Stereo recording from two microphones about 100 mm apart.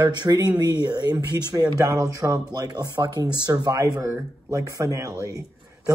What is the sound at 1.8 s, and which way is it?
Speech, 35° right (ahead or behind).